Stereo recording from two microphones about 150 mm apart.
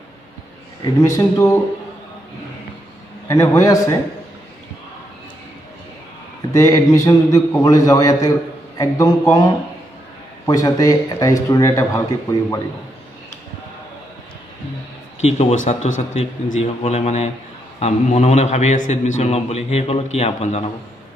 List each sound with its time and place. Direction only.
0.8 s speech: 20° left (ahead or behind)
3.3 s speech: 20° left (ahead or behind)
6.5 s a man's voice: 20° left (ahead or behind)
10.4 s speech: 25° left (ahead or behind)
15.2 s a man's voice: 55° left (ahead or behind)